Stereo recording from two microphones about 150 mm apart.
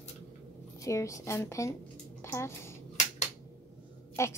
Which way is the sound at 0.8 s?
20° left (ahead or behind).